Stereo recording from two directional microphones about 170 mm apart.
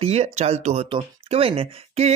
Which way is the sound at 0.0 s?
40° right (ahead or behind).